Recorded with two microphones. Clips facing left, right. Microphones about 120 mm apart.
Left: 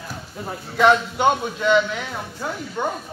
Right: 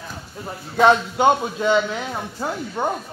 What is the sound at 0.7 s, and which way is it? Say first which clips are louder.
A man's voice: right 1 dB; 30° right (ahead or behind).